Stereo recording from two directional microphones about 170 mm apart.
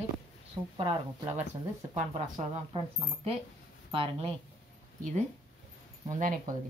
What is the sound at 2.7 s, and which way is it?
Speech, 35° right (ahead or behind).